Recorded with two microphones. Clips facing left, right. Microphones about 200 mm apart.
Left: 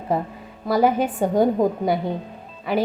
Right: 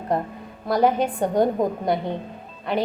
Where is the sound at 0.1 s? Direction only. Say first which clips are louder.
Left 1 dB; 5° left (ahead or behind).